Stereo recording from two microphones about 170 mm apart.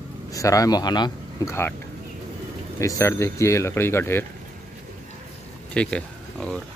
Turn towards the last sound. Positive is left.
turn(degrees=5)  # may be behind; listen again after turning